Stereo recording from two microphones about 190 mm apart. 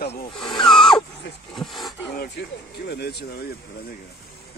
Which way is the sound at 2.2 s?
60° left (ahead or behind).